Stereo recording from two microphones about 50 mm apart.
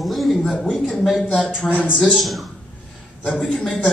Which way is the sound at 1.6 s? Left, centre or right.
Centre.